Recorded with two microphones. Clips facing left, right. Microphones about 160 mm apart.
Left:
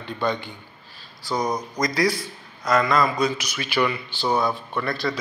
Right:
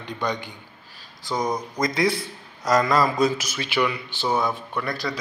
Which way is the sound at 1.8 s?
25° right (ahead or behind).